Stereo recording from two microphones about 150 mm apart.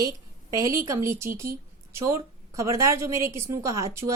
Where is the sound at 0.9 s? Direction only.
20° right (ahead or behind).